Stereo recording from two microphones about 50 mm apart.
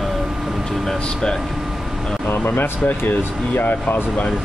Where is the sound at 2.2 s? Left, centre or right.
Left.